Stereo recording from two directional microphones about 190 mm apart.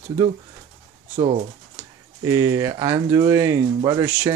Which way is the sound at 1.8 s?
10° right (ahead or behind).